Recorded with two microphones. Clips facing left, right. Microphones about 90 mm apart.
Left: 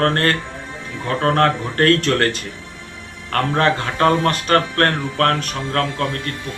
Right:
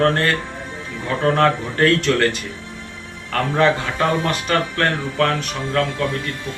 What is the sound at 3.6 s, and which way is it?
Speech, 50° left (ahead or behind).